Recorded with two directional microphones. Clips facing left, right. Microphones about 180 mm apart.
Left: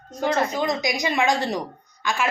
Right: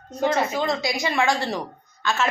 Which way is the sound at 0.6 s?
20° left (ahead or behind).